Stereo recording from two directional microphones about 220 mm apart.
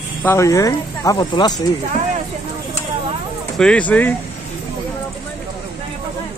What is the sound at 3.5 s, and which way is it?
Speech, 5° left (ahead or behind).